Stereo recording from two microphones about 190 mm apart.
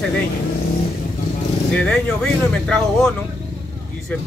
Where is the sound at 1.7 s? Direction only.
5° left (ahead or behind).